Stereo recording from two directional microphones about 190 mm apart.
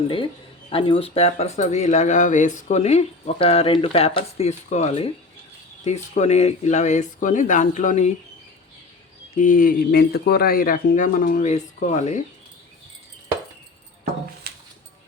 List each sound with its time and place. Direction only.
0.7 s speech: 30° left (ahead or behind)
9.3 s speech: 45° left (ahead or behind)
14.5 s music: 55° right (ahead or behind)